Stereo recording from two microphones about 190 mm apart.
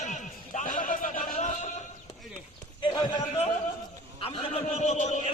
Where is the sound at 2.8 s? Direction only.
25° left (ahead or behind).